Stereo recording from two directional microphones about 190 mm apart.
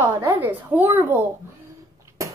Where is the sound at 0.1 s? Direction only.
10° right (ahead or behind).